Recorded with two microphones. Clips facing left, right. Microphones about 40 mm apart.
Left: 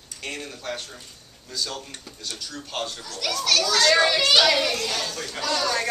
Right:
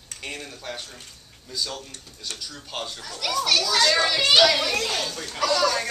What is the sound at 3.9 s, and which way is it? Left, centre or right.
Speech, centre.